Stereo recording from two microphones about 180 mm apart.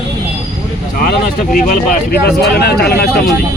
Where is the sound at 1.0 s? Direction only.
50° left (ahead or behind).